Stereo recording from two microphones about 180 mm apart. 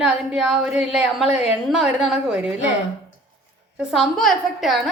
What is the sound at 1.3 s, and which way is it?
Speech, 35° left (ahead or behind).